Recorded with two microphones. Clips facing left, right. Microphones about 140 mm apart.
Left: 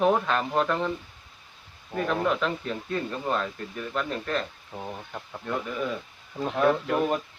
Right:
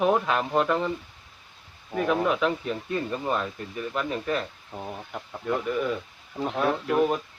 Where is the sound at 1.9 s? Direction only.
5° right (ahead or behind).